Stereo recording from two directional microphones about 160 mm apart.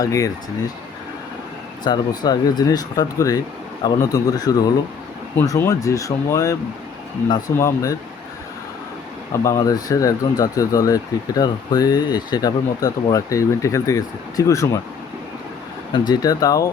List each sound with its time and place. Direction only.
0.0 s speech: 20° left (ahead or behind)
1.8 s speech: 25° left (ahead or behind)
9.4 s speech: 20° left (ahead or behind)
15.9 s speech: 25° left (ahead or behind)